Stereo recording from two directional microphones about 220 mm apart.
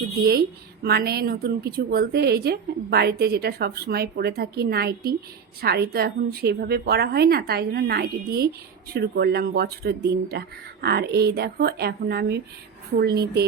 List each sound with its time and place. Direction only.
0.3 s a woman's voice: 45° right (ahead or behind)